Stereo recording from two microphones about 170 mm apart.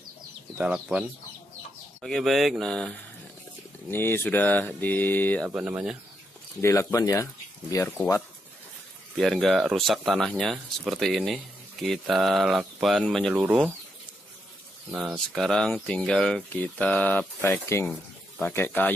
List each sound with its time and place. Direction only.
0.6 s speech: 5° right (ahead or behind)
3.9 s speech: 15° left (ahead or behind)
5.5 s speech: 10° right (ahead or behind)
6.6 s speech: 15° left (ahead or behind)
9.2 s speech: centre (ahead or behind)
13.3 s speech: 10° right (ahead or behind)
14.9 s speech: 10° right (ahead or behind); by 18.9 s 10° left (ahead or behind)